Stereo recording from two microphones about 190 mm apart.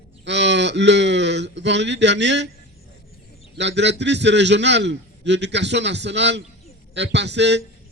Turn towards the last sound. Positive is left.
turn(degrees=-65)  # may be behind; listen again after turning